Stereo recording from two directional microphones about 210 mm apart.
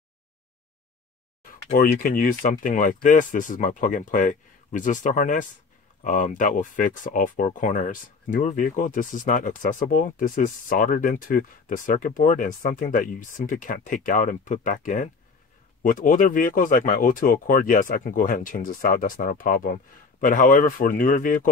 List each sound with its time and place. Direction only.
1.7 s speech: 40° left (ahead or behind)